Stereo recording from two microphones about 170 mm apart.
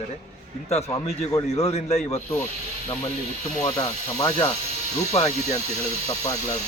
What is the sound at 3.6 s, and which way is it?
Speech, 25° left (ahead or behind).